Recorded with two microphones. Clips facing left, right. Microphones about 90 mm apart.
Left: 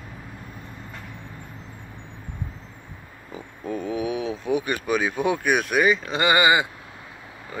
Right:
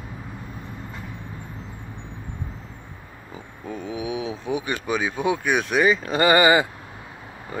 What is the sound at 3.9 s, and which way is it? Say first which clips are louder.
Speech: left 1 dB; 15° right (ahead or behind).